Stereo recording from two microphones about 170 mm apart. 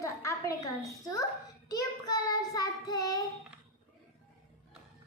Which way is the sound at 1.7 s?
20° left (ahead or behind).